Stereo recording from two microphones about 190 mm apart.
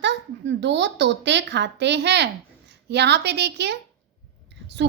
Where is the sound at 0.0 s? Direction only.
65° right (ahead or behind).